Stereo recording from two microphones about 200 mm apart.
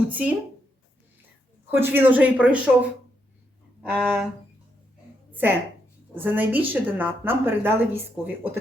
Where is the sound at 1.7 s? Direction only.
10° right (ahead or behind).